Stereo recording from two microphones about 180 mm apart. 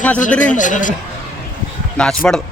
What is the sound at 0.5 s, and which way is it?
Speech, 45° left (ahead or behind).